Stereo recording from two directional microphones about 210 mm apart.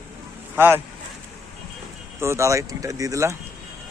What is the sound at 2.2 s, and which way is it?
Speech, 15° right (ahead or behind).